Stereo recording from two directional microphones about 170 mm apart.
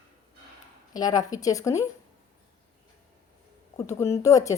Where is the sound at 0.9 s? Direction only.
20° left (ahead or behind).